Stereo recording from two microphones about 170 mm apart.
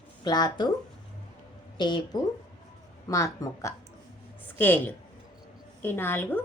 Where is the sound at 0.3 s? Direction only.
25° left (ahead or behind).